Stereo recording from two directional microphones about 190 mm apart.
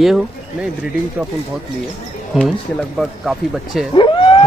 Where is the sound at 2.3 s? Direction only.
Centre (ahead or behind).